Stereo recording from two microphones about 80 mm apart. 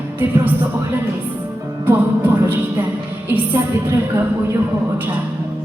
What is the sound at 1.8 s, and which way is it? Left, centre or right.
Music, right.